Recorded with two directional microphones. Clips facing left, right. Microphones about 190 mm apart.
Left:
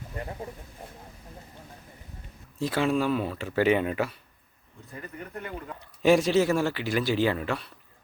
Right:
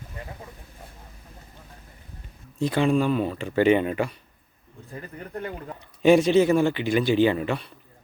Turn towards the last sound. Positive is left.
turn(degrees=0)  # may be behind; listen again after turning